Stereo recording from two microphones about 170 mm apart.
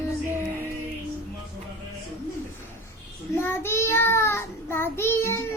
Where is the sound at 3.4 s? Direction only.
15° left (ahead or behind).